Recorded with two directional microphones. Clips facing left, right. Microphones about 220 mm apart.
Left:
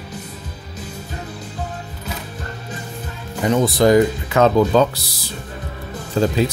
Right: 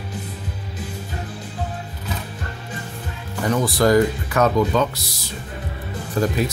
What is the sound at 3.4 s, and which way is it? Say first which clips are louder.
Speech: left 3 dB; 20° left (ahead or behind).